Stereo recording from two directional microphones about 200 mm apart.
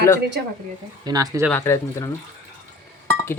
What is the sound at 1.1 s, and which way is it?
Speech, 20° right (ahead or behind).